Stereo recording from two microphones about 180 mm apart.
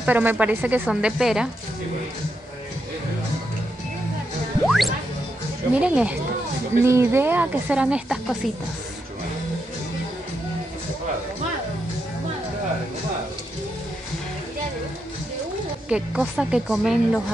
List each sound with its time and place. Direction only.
0.0 s speech: 10° right (ahead or behind)
4.6 s speech: centre (ahead or behind)
15.9 s speech: 5° right (ahead or behind)